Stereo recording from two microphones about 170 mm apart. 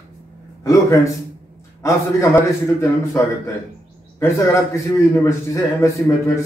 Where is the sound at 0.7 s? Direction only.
20° left (ahead or behind).